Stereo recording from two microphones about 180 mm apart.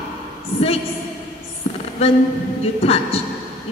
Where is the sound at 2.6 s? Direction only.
35° left (ahead or behind).